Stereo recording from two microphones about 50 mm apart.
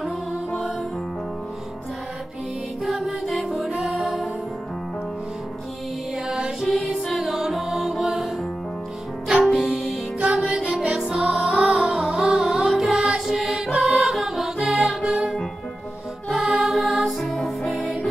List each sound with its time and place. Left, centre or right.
0.5 s music: centre
2.8 s music: centre
6.6 s music: centre
9.3 s music: centre
10.6 s music: centre